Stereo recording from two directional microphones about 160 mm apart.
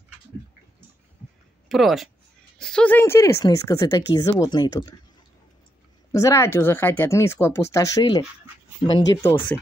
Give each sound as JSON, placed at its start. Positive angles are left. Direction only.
{"t": 1.7, "sound": "speech", "side_deg": 0}
{"t": 6.1, "sound": "speech", "side_deg": 20}
{"t": 9.2, "sound": "speech", "side_deg": 15}